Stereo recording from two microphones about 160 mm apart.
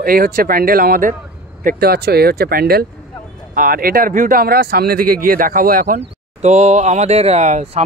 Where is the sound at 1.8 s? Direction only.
80° right.